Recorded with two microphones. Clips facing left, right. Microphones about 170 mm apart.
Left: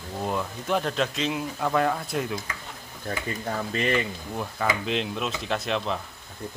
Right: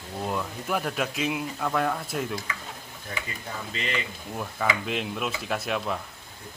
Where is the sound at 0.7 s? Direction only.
5° right (ahead or behind).